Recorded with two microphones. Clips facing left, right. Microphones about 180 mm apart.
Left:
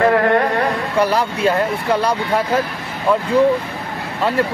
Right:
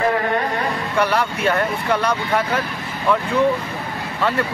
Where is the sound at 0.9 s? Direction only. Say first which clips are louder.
Left 2 dB; 30° left (ahead or behind).